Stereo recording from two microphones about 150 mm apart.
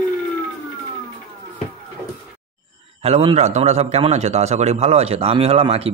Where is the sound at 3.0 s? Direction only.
40° right (ahead or behind).